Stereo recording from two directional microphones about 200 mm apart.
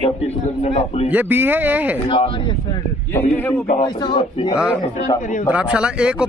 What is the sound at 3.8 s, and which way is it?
Speech, 25° left (ahead or behind).